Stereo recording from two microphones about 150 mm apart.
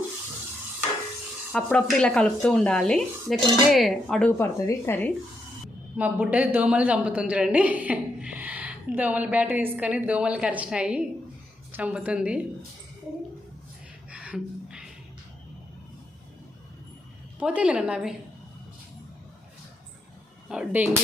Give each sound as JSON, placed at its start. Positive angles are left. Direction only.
{"t": 1.5, "sound": "speech", "side_deg": 5}
{"t": 4.4, "sound": "speech", "side_deg": 15}
{"t": 6.0, "sound": "speech", "side_deg": -10}
{"t": 14.1, "sound": "a sound", "side_deg": -10}
{"t": 17.4, "sound": "speech", "side_deg": -10}
{"t": 20.5, "sound": "speech", "side_deg": -10}